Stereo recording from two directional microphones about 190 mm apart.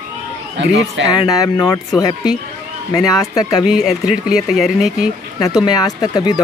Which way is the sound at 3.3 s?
20° left (ahead or behind).